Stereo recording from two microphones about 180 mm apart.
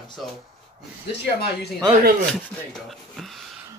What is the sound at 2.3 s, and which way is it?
Speech, centre (ahead or behind).